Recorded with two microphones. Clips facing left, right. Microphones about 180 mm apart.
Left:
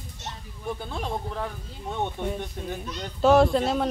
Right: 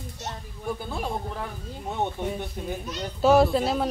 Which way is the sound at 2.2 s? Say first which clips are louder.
Even; 5° right (ahead or behind).